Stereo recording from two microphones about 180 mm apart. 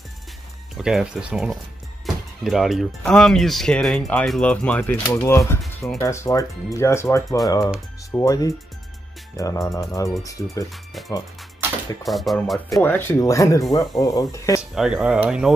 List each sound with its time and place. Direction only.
0.7 s speech: 5° right (ahead or behind); by 5.6 s 15° left (ahead or behind)
5.6 s music: 5° left (ahead or behind)
5.9 s speech: 15° left (ahead or behind)
12.0 s speech: centre (ahead or behind)
12.8 s speech: 10° left (ahead or behind)
14.6 s speech: 5° right (ahead or behind)